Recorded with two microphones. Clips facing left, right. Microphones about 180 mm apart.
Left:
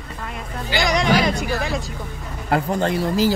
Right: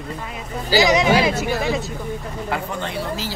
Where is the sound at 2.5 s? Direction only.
45° left (ahead or behind).